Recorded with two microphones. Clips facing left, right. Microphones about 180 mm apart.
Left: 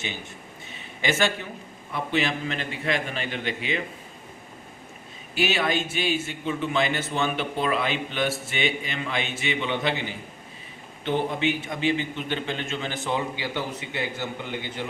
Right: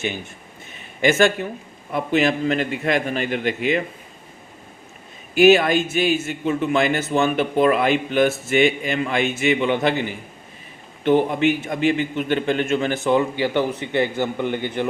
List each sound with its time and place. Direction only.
1.0 s a man's voice: 50° right (ahead or behind)
5.4 s a man's voice: 45° right (ahead or behind)
11.0 s a man's voice: 45° right (ahead or behind)